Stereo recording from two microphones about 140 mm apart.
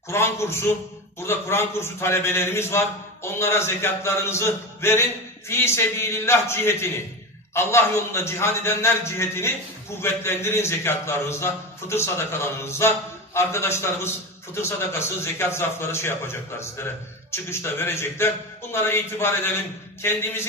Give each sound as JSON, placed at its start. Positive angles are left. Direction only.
{"t": 0.1, "sound": "a man's voice", "side_deg": 20}